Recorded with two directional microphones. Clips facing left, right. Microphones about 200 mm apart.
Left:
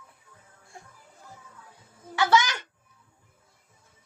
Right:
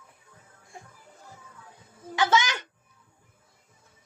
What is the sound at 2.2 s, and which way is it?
Speech, 15° right (ahead or behind).